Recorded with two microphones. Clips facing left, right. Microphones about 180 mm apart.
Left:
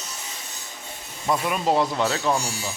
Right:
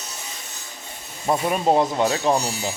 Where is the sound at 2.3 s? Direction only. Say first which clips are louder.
Right 4 dB; 30° right (ahead or behind).